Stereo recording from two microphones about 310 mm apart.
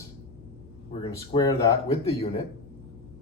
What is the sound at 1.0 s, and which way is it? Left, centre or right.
Speech, centre.